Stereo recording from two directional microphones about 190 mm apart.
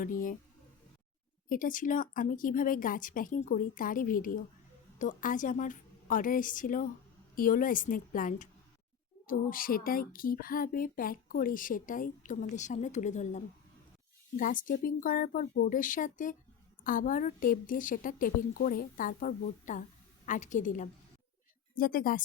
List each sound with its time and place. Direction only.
0.0 s speech: 45° left (ahead or behind)
1.5 s speech: 45° left (ahead or behind)